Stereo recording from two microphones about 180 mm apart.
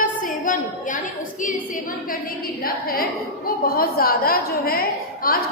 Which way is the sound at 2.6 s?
55° left (ahead or behind).